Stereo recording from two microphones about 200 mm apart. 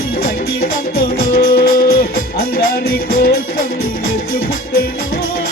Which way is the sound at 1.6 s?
45° left (ahead or behind).